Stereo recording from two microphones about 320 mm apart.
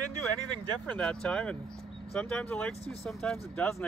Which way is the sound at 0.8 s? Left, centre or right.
Centre.